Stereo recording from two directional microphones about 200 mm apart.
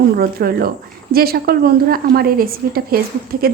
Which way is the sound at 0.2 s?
50° right (ahead or behind).